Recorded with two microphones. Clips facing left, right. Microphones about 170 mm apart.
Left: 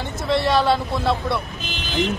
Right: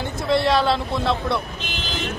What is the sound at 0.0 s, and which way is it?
Speech, centre (ahead or behind).